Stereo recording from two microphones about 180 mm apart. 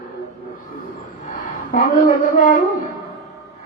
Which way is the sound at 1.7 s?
50° left (ahead or behind).